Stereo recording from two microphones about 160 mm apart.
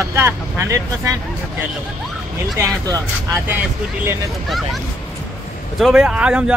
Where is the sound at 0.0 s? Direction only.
15° right (ahead or behind).